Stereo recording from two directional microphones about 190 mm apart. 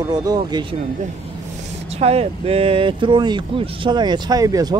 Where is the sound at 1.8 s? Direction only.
35° right (ahead or behind).